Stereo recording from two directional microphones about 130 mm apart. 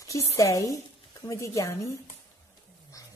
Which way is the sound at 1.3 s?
25° left (ahead or behind).